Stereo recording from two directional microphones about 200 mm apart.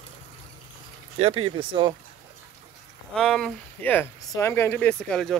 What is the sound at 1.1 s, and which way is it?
Speech, 30° right (ahead or behind).